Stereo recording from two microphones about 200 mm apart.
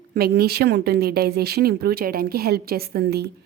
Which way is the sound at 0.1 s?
50° right (ahead or behind).